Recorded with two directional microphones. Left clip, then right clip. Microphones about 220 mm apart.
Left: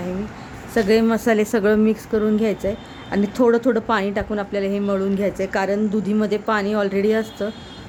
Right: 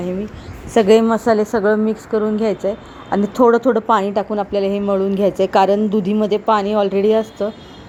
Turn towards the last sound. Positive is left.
turn(degrees=-5)  # may be behind; listen again after turning